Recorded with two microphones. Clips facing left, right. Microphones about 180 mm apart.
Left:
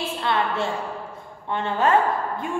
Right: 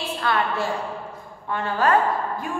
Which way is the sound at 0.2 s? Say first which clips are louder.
Even; 25° left (ahead or behind).